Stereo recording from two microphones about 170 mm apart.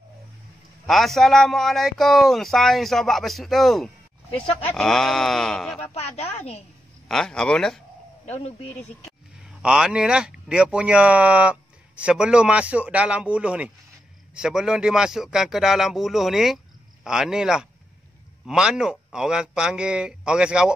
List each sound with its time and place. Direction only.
0.8 s a man's voice: centre (ahead or behind)
5.8 s speech: 40° left (ahead or behind)
7.1 s a man's voice: 5° left (ahead or behind)
9.6 s a man's voice: 5° right (ahead or behind)